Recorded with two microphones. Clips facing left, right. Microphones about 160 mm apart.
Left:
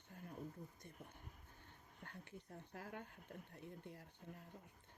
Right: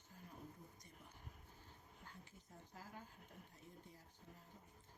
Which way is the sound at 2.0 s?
65° left (ahead or behind).